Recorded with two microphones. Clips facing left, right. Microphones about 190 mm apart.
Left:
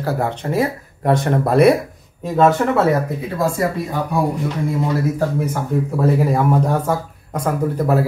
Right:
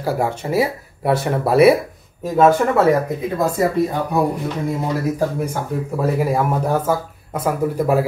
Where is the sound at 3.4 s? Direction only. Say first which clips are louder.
Even; 20° right (ahead or behind).